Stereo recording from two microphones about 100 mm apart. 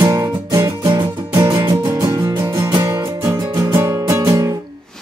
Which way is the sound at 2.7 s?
45° right (ahead or behind).